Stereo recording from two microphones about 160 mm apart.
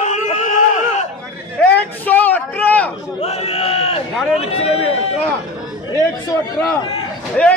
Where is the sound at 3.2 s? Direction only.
40° left (ahead or behind).